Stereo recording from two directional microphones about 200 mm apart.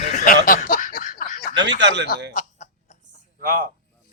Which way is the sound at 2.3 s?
35° left (ahead or behind).